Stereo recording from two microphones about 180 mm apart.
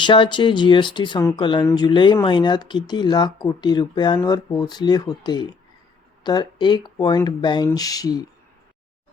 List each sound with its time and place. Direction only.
0.0 s speech: 25° left (ahead or behind)